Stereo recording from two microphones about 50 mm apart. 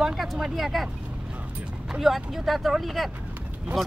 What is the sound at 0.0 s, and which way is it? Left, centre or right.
Speech, centre.